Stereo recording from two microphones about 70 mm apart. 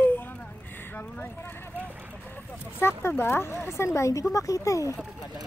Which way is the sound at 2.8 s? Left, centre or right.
Left.